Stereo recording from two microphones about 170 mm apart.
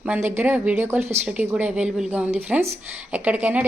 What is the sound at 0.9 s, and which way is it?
Speech, 40° right (ahead or behind).